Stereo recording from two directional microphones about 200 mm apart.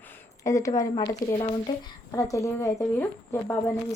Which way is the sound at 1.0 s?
30° left (ahead or behind).